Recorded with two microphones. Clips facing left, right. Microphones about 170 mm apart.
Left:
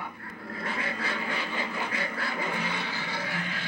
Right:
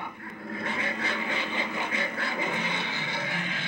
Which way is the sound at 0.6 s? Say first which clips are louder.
Right 1 dB; 25° right (ahead or behind).